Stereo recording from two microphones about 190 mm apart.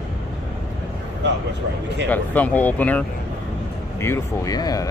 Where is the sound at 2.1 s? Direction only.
10° left (ahead or behind).